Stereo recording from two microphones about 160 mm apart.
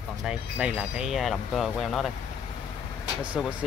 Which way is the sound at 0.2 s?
5° right (ahead or behind).